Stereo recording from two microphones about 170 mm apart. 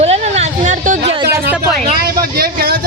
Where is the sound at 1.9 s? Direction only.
65° right (ahead or behind).